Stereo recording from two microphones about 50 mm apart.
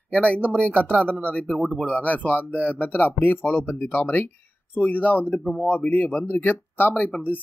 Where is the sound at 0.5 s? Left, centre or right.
Left.